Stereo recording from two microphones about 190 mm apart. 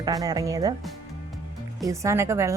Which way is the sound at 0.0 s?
20° right (ahead or behind).